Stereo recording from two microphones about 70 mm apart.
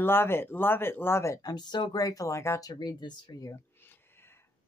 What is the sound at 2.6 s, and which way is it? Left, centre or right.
Speech, left.